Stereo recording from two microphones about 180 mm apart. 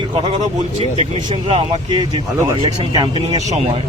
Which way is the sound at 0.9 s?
30° right (ahead or behind).